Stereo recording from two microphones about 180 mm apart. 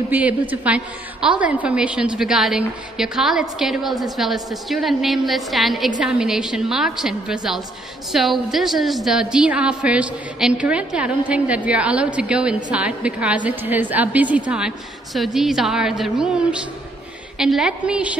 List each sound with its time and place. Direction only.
0.1 s a woman's voice: 10° right (ahead or behind)